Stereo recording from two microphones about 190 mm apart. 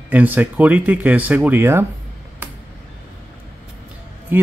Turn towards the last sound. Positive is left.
turn(degrees=-10)  # may be behind; listen again after turning